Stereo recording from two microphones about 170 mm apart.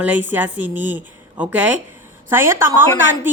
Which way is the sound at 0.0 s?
10° right (ahead or behind).